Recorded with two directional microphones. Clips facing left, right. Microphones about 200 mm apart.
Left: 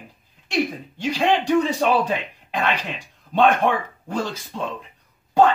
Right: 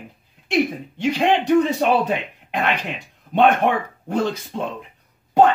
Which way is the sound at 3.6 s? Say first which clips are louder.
Right 1 dB; 20° right (ahead or behind).